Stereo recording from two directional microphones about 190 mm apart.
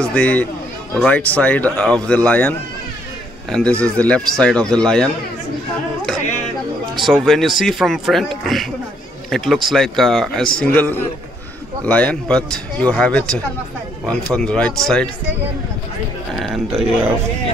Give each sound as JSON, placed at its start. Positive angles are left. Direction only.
{"t": 0.0, "sound": "speech", "side_deg": 5}
{"t": 3.8, "sound": "speech", "side_deg": 5}
{"t": 7.0, "sound": "speech", "side_deg": 0}
{"t": 16.4, "sound": "speech", "side_deg": 0}